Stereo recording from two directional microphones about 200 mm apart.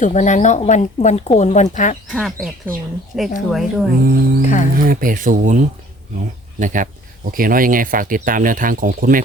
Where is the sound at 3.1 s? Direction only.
5° right (ahead or behind).